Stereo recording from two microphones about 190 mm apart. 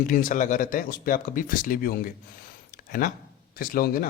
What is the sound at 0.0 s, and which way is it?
Speech, 45° left (ahead or behind).